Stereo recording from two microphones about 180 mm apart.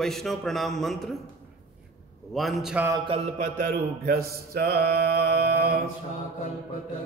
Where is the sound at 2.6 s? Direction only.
10° right (ahead or behind).